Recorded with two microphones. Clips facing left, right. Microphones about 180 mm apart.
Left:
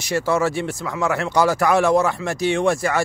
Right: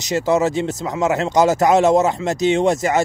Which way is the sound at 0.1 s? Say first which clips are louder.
Right 3 dB; 20° right (ahead or behind).